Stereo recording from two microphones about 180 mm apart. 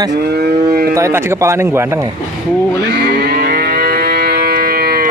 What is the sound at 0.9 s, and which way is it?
Speech, 15° right (ahead or behind).